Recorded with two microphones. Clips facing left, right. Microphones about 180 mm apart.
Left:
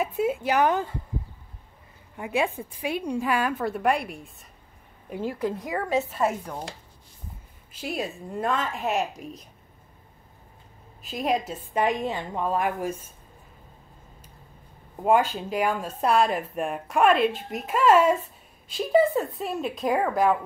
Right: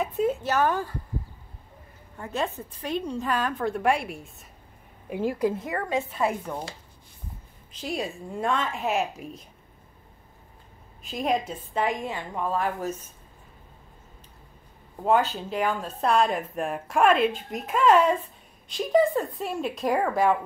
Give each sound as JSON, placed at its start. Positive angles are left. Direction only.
{"t": 0.0, "sound": "a woman's voice", "side_deg": 10}
{"t": 2.1, "sound": "a woman's voice", "side_deg": 10}
{"t": 7.7, "sound": "a woman's voice", "side_deg": 5}
{"t": 11.0, "sound": "a woman's voice", "side_deg": 0}
{"t": 11.7, "sound": "a woman's voice", "side_deg": 15}
{"t": 15.0, "sound": "a woman's voice", "side_deg": 10}